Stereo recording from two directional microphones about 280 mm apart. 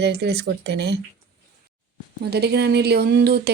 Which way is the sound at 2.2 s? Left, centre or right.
Right.